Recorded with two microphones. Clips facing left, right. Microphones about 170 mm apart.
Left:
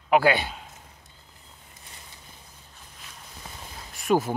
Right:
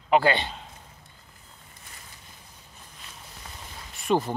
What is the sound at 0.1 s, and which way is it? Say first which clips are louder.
Speech: left 1 dB; 5° left (ahead or behind).